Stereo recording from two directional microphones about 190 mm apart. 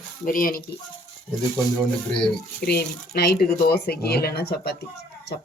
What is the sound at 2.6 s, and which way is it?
Speech, 55° left (ahead or behind).